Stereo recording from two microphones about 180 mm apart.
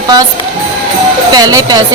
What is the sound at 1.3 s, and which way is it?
Speech, 20° right (ahead or behind).